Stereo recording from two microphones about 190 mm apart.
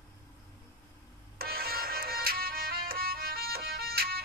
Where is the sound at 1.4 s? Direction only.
55° right (ahead or behind).